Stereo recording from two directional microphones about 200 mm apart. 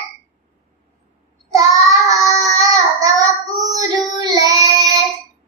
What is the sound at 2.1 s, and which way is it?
Child singing, 15° right (ahead or behind).